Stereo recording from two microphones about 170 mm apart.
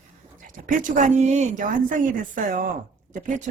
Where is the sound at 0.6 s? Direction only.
50° right (ahead or behind).